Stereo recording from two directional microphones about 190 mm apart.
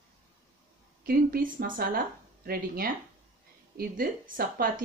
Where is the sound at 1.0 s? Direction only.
50° right (ahead or behind).